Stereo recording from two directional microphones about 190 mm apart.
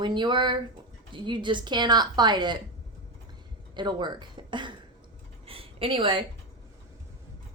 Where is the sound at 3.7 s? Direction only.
25° right (ahead or behind).